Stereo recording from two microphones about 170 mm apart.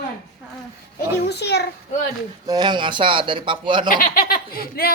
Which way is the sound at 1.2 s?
80° left.